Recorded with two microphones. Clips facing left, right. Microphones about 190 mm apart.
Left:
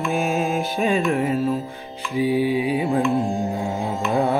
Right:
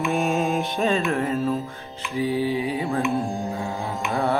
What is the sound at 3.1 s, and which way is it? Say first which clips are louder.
Music: left 4 dB; 20° left (ahead or behind).